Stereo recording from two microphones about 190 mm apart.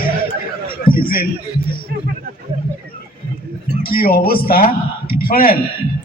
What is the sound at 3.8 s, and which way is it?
A man's voice, 50° left (ahead or behind).